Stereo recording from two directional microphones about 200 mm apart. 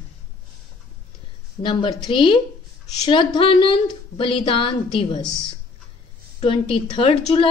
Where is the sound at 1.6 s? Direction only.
25° left (ahead or behind).